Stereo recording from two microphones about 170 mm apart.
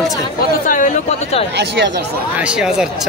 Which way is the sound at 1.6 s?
85° right.